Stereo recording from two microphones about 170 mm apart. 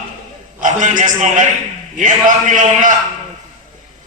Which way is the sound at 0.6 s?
50° right (ahead or behind).